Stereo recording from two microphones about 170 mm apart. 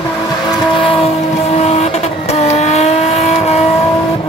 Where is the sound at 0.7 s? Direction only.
30° left (ahead or behind).